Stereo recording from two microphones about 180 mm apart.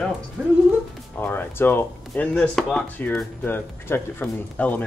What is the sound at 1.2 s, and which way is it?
Speech, 10° left (ahead or behind).